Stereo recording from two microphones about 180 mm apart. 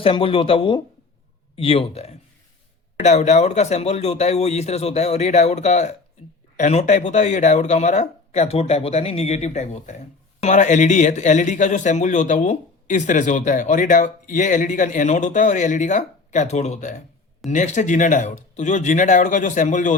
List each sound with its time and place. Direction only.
0.0 s a man's voice: 30° left (ahead or behind)